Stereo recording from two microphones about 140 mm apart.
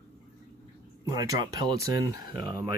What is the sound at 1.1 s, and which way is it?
Speech, 25° right (ahead or behind).